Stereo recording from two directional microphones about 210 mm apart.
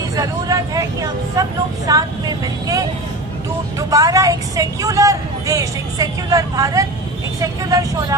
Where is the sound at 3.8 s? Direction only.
15° right (ahead or behind).